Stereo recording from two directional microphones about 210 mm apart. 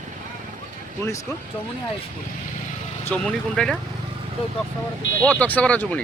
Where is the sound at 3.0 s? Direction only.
5° left (ahead or behind).